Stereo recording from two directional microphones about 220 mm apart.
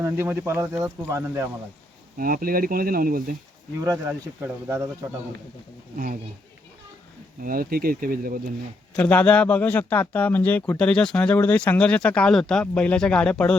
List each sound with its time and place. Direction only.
0.0 s speech: 10° right (ahead or behind)
2.1 s speech: 40° right (ahead or behind)
3.8 s speech: 15° right (ahead or behind)
7.4 s speech: 40° right (ahead or behind)
9.0 s speech: 5° left (ahead or behind)